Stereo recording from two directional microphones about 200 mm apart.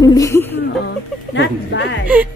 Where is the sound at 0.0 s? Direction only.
15° left (ahead or behind).